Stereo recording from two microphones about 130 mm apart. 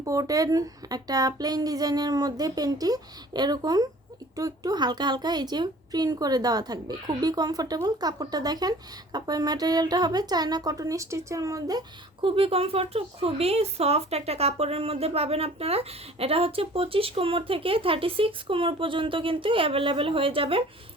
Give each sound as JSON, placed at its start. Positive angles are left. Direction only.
{"t": 0.0, "sound": "speech", "side_deg": -25}
{"t": 12.2, "sound": "speech", "side_deg": -45}